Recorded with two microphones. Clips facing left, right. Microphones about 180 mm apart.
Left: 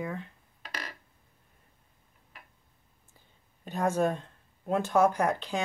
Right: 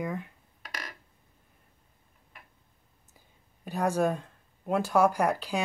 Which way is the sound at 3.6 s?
10° right (ahead or behind).